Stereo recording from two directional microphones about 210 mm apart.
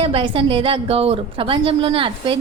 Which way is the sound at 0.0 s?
25° right (ahead or behind).